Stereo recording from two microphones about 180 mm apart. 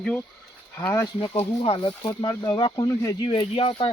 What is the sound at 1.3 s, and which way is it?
Speech, 30° left (ahead or behind).